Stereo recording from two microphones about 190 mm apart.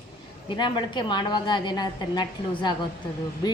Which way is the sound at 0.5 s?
25° left (ahead or behind).